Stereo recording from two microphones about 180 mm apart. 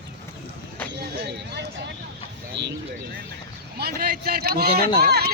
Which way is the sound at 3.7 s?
60° right (ahead or behind).